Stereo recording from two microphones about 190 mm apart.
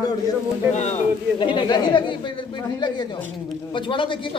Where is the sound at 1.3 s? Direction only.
25° left (ahead or behind).